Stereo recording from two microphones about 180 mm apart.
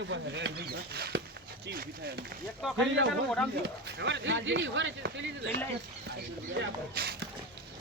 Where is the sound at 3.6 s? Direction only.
75° right (ahead or behind).